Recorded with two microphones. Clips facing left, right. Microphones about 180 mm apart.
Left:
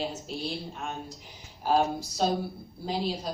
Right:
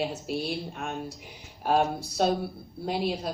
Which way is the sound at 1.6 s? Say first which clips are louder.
Right 1 dB; 60° right (ahead or behind).